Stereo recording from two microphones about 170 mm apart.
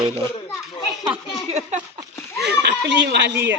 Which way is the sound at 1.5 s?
40° right (ahead or behind).